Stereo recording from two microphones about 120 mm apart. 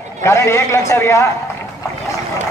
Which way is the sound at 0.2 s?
25° left (ahead or behind).